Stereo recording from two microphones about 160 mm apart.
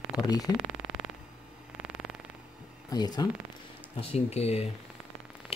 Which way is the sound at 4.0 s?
40° left (ahead or behind).